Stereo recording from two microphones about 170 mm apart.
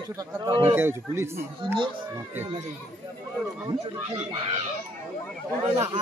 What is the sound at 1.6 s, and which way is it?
Speech, 30° right (ahead or behind).